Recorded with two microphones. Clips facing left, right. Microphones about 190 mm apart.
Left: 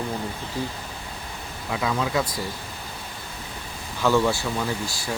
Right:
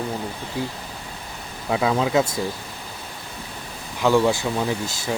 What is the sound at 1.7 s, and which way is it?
Speech, 25° right (ahead or behind).